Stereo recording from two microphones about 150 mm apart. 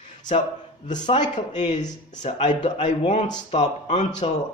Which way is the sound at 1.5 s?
50° left (ahead or behind).